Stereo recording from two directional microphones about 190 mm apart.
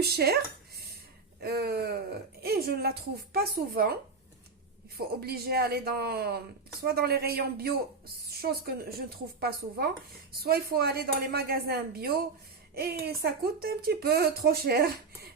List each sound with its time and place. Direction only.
0.0 s speech: 55° right (ahead or behind)
1.4 s speech: 55° right (ahead or behind)
4.9 s speech: 55° right (ahead or behind)